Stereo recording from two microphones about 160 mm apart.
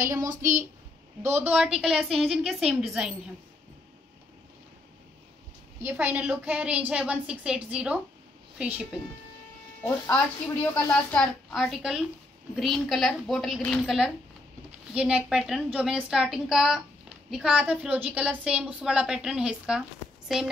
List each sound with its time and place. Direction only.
0.3 s a woman's voice: 55° right (ahead or behind)
1.2 s a woman's voice: 10° right (ahead or behind)
5.9 s a woman's voice: 10° right (ahead or behind)
9.8 s a woman's voice: 15° left (ahead or behind); by 19.8 s 5° right (ahead or behind)